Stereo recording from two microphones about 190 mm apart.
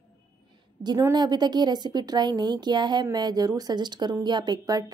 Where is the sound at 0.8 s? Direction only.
20° right (ahead or behind).